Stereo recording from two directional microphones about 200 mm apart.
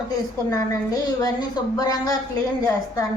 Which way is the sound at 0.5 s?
20° left (ahead or behind).